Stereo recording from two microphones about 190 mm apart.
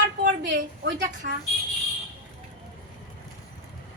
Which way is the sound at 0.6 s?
70° right (ahead or behind).